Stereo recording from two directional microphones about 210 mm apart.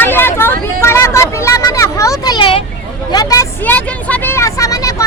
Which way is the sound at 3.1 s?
15° left (ahead or behind).